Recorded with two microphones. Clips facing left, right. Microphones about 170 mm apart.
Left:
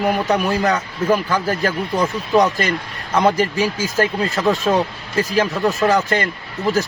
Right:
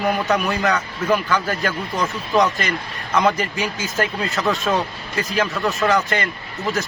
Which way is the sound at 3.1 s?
30° left (ahead or behind).